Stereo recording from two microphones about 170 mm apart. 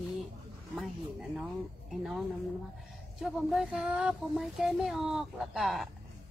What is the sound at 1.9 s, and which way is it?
Speech, centre (ahead or behind).